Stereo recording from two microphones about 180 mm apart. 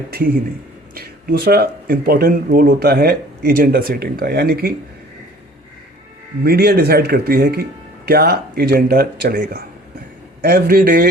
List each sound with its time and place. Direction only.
0.1 s speech: 55° right (ahead or behind)
6.4 s speech: 60° right (ahead or behind)